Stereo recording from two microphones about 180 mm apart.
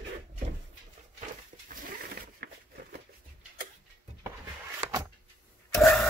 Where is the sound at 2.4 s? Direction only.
65° right (ahead or behind).